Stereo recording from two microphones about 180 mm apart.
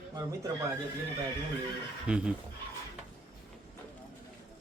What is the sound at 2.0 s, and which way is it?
Speech, 5° right (ahead or behind).